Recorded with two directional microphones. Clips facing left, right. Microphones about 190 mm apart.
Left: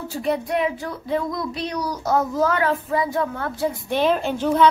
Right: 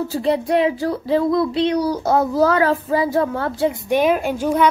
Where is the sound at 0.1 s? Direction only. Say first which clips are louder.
Right 3 dB; 30° right (ahead or behind).